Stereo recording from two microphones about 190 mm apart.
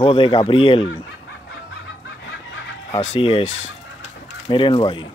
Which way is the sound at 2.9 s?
30° left (ahead or behind).